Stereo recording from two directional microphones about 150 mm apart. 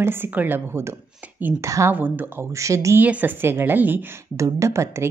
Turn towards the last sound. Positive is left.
turn(degrees=-20)  # may be behind; listen again after turning